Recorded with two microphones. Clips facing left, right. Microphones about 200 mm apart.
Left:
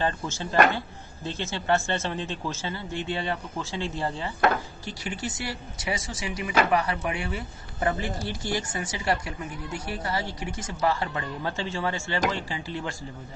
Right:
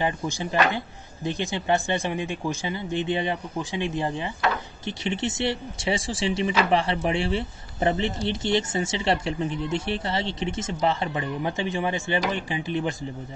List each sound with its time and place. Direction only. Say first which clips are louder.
0.0 s speech: right 2 dB; 15° right (ahead or behind)